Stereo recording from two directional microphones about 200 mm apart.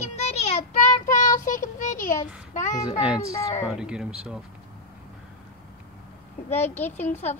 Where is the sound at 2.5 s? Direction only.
40° left (ahead or behind).